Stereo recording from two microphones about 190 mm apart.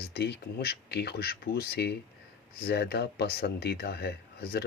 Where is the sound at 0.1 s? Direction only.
60° left (ahead or behind).